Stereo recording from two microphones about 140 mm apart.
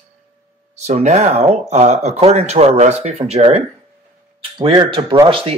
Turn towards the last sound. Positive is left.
turn(degrees=-40)  # may be behind; listen again after turning